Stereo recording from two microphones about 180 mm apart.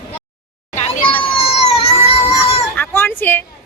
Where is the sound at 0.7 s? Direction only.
30° left (ahead or behind).